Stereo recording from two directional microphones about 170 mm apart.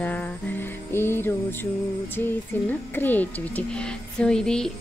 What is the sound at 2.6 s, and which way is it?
A woman's voice, 10° left (ahead or behind).